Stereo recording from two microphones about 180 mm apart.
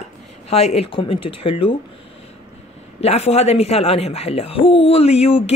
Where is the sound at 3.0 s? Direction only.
35° left (ahead or behind).